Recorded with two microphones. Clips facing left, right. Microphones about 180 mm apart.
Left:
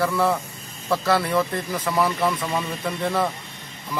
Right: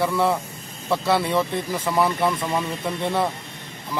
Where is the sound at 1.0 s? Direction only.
25° right (ahead or behind).